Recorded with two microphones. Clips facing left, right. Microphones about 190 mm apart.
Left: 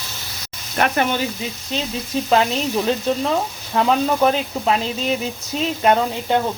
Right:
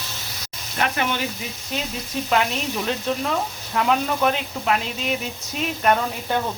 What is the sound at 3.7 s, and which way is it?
Speech, 30° left (ahead or behind).